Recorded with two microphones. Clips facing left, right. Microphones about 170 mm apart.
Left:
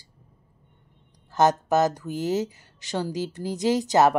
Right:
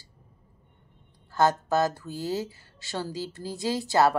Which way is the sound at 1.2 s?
20° left (ahead or behind).